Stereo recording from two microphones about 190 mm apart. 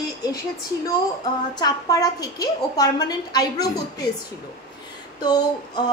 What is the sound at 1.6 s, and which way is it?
A woman's voice, 20° left (ahead or behind).